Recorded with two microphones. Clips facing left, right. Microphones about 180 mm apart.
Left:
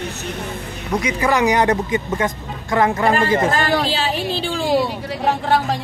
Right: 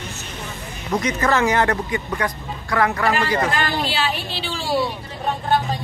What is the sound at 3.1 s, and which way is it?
Speech, 50° left (ahead or behind).